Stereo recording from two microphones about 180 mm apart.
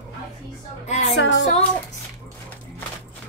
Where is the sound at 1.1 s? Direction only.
90° left.